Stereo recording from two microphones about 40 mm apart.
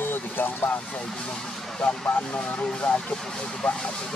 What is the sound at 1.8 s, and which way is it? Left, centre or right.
Speech, left.